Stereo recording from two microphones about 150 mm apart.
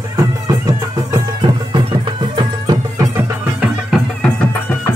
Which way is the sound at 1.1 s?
30° right (ahead or behind).